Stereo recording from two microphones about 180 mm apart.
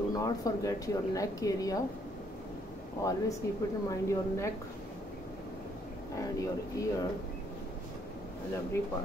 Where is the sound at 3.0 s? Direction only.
20° left (ahead or behind).